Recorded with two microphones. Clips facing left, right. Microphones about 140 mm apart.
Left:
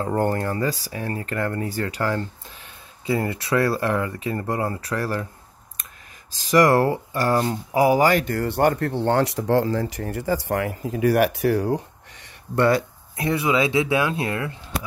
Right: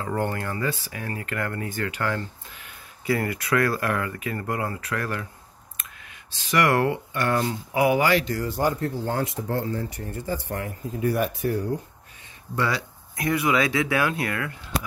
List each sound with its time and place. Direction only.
0.0 s speech: 35° left (ahead or behind)
6.3 s speech: 40° left (ahead or behind); by 11.8 s 90° left
12.5 s speech: 55° left (ahead or behind)
13.2 s speech: 25° left (ahead or behind)